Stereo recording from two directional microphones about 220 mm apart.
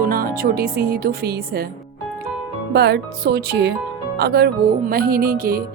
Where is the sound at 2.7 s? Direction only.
50° right (ahead or behind).